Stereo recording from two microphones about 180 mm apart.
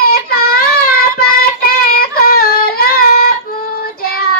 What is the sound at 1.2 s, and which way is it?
Child singing, 55° left (ahead or behind).